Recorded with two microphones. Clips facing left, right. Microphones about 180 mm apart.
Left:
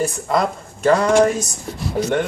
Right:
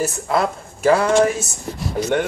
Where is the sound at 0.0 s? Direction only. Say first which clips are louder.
Left 1 dB; 5° right (ahead or behind).